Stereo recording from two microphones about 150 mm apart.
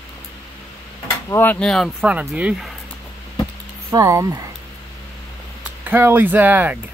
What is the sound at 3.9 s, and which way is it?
Speech, 20° right (ahead or behind).